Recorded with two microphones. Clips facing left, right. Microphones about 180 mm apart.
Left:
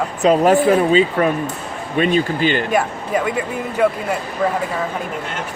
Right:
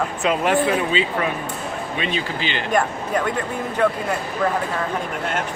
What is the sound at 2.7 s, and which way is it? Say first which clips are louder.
Speech: left 2 dB; 5° left (ahead or behind).